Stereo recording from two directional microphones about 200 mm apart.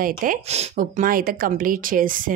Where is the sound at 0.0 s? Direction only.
40° right (ahead or behind).